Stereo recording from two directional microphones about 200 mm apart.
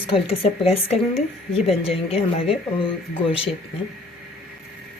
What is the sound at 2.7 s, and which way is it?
Speech, 25° left (ahead or behind).